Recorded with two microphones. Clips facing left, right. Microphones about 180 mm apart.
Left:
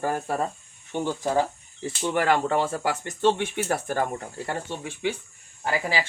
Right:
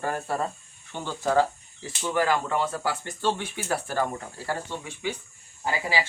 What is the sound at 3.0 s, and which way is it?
Speech, 20° left (ahead or behind).